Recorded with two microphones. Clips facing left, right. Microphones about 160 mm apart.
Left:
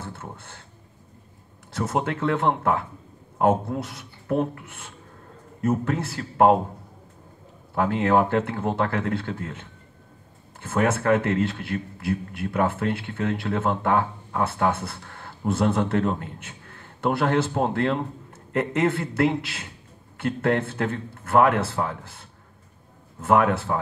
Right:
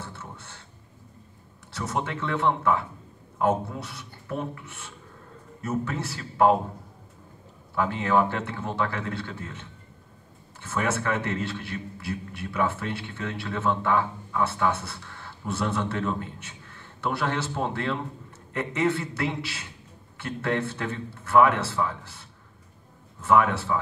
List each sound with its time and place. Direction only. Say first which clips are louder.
0.0 s a sound: left 3 dB; 55° left (ahead or behind)
1.7 s a man's voice: left 4 dB; 50° left (ahead or behind)
7.7 s a man's voice: left 3 dB; 50° left (ahead or behind)
23.2 s a man's voice: left 2 dB; 55° left (ahead or behind)